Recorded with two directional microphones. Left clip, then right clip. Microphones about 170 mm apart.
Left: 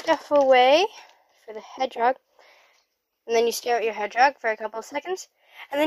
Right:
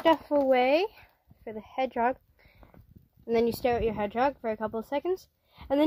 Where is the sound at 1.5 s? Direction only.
25° left (ahead or behind).